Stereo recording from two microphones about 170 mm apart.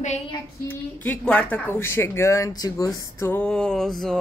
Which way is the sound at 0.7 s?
10° left (ahead or behind).